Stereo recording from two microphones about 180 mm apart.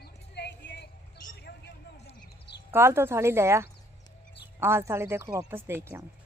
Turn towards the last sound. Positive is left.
turn(degrees=-15)  # may be behind; listen again after turning